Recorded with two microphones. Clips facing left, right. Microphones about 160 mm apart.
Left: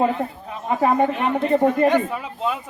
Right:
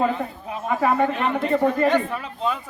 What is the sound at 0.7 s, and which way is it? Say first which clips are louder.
Speech: left 2 dB; 20° left (ahead or behind).